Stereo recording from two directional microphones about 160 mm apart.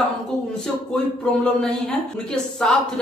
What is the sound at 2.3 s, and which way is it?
Speech, 5° left (ahead or behind).